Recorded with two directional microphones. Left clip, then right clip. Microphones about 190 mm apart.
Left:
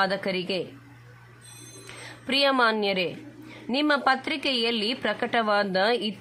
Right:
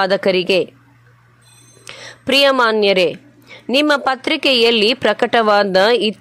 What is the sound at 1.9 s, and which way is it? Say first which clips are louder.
A woman's voice: right 12 dB; 40° right (ahead or behind).